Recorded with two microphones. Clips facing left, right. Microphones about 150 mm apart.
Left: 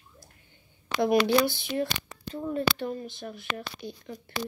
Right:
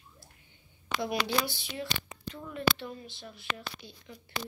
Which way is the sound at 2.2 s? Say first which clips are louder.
Left 11 dB; 35° left (ahead or behind).